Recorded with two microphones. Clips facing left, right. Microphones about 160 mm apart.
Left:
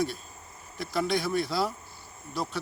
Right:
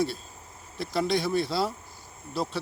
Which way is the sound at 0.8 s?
30° right (ahead or behind).